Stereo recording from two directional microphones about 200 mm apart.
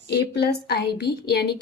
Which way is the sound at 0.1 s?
55° left (ahead or behind).